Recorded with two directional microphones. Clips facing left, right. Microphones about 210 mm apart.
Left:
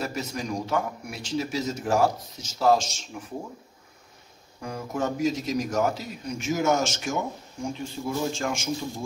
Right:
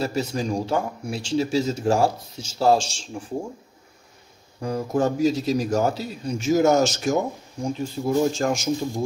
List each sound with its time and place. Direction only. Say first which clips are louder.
0.0 s speech: right 6 dB; 30° right (ahead or behind)
4.6 s a man's voice: right 7 dB; 35° right (ahead or behind)